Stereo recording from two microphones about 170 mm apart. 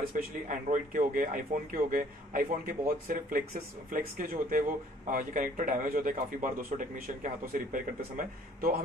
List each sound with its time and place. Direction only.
0.1 s speech: 50° right (ahead or behind)